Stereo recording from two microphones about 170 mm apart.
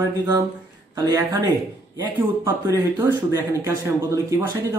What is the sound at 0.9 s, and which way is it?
Speech, 20° right (ahead or behind).